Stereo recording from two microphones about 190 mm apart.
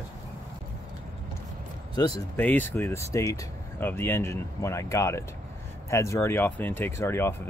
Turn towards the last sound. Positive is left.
turn(degrees=15)  # may be behind; listen again after turning